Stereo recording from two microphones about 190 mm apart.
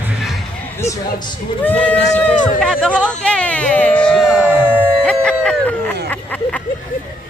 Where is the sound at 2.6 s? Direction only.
5° left (ahead or behind).